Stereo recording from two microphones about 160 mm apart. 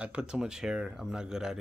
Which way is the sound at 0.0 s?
5° right (ahead or behind).